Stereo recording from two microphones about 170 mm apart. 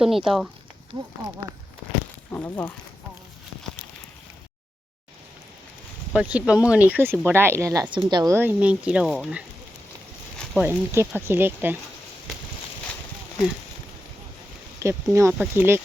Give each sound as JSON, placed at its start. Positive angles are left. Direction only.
{"t": 0.0, "sound": "speech", "side_deg": 0}
{"t": 2.3, "sound": "speech", "side_deg": 10}
{"t": 6.1, "sound": "speech", "side_deg": -10}
{"t": 10.6, "sound": "speech", "side_deg": -15}
{"t": 14.8, "sound": "speech", "side_deg": -15}